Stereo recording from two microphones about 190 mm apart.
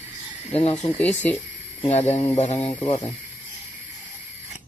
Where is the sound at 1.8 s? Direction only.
35° left (ahead or behind).